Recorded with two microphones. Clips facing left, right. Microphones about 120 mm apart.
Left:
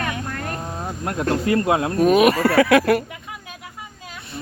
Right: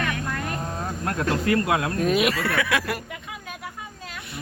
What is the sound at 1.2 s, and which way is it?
Speech, 30° left (ahead or behind).